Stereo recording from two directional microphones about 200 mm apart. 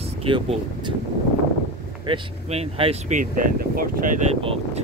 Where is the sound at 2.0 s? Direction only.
30° right (ahead or behind); by 4.3 s 45° right (ahead or behind).